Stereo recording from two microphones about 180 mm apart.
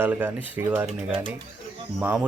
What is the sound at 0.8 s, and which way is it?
Speech, 30° right (ahead or behind).